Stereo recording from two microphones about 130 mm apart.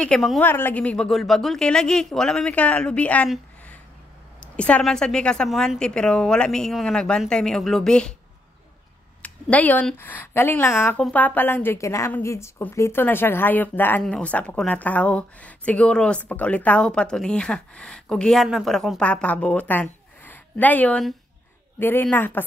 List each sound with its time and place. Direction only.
0.0 s a woman's voice: 5° left (ahead or behind)
0.4 s a woman's voice: 15° left (ahead or behind)
4.4 s a woman's voice: 10° left (ahead or behind)
9.2 s speech: 10° left (ahead or behind)